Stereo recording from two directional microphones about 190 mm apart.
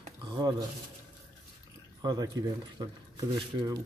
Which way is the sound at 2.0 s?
20° right (ahead or behind).